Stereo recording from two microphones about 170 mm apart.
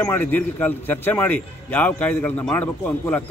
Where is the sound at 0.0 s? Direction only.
10° left (ahead or behind).